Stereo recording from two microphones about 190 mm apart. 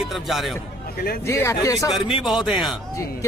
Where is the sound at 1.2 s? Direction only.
15° left (ahead or behind).